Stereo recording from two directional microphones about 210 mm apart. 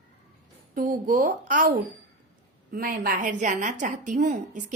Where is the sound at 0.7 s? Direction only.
40° right (ahead or behind).